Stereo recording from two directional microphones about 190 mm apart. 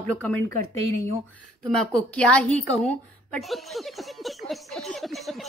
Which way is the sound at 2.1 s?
5° left (ahead or behind).